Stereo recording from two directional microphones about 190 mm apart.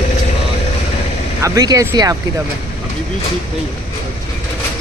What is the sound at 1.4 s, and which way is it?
Speech, 20° right (ahead or behind).